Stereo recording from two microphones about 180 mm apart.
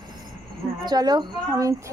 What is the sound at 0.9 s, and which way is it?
Speech, 25° right (ahead or behind).